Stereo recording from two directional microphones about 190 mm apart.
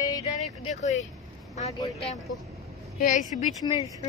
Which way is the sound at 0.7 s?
35° left (ahead or behind).